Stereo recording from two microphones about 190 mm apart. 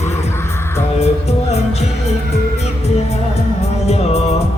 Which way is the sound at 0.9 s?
35° left (ahead or behind).